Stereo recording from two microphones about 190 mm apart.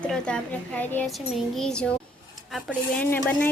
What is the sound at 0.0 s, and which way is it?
Speech, 5° left (ahead or behind).